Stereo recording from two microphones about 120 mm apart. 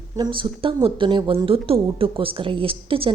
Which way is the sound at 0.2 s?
45° right (ahead or behind).